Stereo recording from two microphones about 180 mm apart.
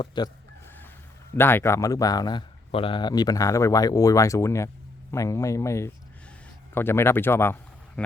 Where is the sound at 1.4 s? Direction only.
10° left (ahead or behind).